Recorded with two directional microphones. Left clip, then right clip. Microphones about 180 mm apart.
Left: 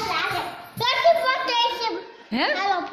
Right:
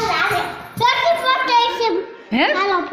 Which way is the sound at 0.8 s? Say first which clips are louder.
Right 3 dB; 30° left (ahead or behind).